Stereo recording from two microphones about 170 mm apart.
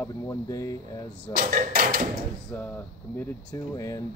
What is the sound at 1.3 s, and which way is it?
Speech, 55° right (ahead or behind).